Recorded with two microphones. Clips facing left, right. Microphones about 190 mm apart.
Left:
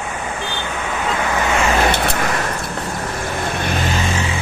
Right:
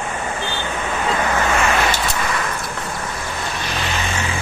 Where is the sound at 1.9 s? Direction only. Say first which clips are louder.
Left 3 dB; 60° left (ahead or behind).